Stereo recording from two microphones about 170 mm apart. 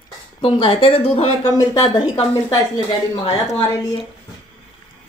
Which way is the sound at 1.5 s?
25° left (ahead or behind).